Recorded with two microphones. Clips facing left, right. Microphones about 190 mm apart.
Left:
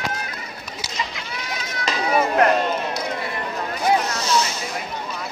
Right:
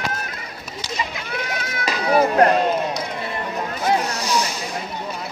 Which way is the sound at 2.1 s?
35° right (ahead or behind).